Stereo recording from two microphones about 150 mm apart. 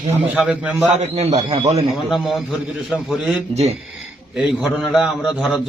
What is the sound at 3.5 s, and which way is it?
Speech, 45° right (ahead or behind).